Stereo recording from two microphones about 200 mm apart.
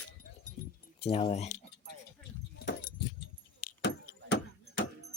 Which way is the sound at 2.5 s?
45° left (ahead or behind).